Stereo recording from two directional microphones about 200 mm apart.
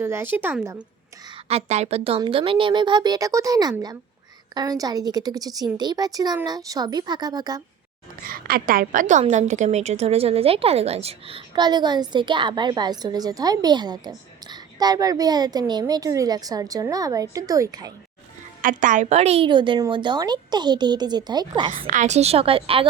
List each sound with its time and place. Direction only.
0.0 s a woman's voice: 10° right (ahead or behind)
1.5 s a woman's voice: 30° right (ahead or behind)
8.2 s a woman's voice: 45° right (ahead or behind); by 17.9 s 20° right (ahead or behind)
18.6 s a woman's voice: 40° right (ahead or behind); by 21.7 s 20° right (ahead or behind)
21.8 s a woman's voice: 35° right (ahead or behind)